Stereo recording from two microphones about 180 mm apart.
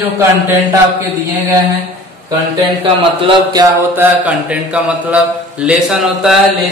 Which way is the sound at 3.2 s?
25° right (ahead or behind).